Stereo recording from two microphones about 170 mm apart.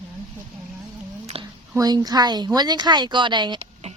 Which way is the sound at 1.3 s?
35° right (ahead or behind).